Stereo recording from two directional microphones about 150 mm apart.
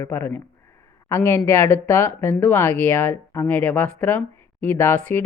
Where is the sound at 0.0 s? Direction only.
15° left (ahead or behind).